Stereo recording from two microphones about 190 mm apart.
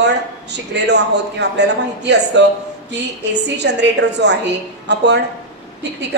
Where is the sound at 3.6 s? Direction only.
65° right (ahead or behind).